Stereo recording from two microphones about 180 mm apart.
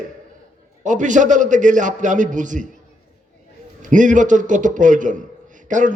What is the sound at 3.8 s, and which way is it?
A man's voice, 45° right (ahead or behind).